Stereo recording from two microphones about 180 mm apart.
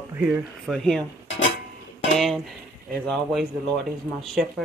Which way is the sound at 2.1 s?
Centre (ahead or behind).